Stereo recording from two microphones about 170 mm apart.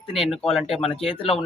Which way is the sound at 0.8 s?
35° left (ahead or behind).